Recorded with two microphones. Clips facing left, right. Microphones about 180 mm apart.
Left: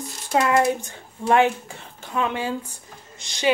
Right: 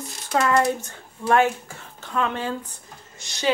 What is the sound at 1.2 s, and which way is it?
Speech, 20° left (ahead or behind).